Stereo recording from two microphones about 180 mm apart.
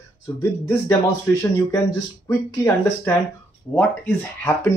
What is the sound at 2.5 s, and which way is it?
Speech, 15° left (ahead or behind).